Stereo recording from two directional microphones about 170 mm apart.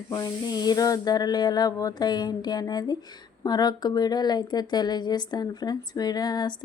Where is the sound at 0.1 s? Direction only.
25° left (ahead or behind).